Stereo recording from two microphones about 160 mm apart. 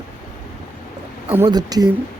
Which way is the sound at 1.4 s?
25° right (ahead or behind).